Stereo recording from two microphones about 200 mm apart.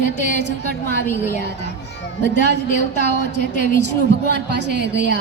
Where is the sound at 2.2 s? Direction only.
60° right (ahead or behind).